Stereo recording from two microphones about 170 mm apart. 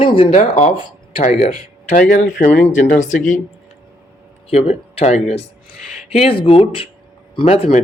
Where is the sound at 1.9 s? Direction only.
55° left (ahead or behind).